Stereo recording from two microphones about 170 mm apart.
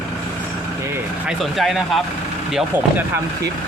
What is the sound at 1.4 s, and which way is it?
Speech, centre (ahead or behind).